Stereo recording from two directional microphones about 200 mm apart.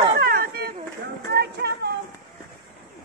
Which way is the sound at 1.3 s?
55° right (ahead or behind).